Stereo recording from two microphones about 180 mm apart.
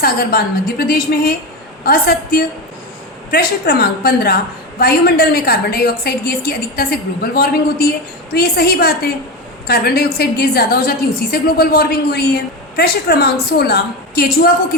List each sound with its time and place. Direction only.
0.0 s a woman's voice: 55° left (ahead or behind)